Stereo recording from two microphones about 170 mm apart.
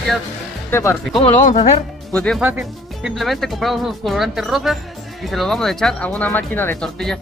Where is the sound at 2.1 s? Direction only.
5° left (ahead or behind).